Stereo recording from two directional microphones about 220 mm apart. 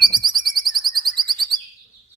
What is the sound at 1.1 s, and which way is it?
Alarm, 20° right (ahead or behind).